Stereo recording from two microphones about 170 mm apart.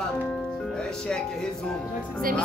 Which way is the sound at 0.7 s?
5° left (ahead or behind).